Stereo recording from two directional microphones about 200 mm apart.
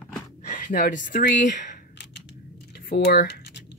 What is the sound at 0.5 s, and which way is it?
Speech, 40° left (ahead or behind).